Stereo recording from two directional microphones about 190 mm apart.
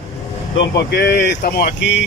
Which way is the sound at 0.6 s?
60° left (ahead or behind).